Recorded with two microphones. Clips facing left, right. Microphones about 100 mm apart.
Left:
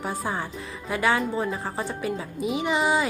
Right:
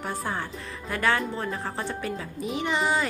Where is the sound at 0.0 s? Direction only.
5° left (ahead or behind).